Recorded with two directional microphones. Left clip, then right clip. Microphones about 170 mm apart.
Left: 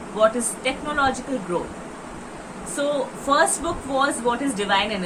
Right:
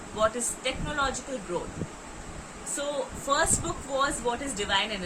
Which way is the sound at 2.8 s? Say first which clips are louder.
Left 8 dB; 10° right (ahead or behind).